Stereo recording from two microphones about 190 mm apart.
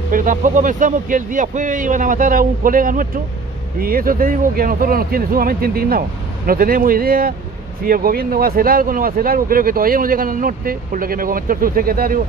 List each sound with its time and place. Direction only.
0.1 s speech: 45° right (ahead or behind)